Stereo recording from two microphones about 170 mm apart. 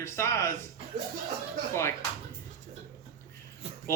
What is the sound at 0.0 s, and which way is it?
Speech, 15° left (ahead or behind).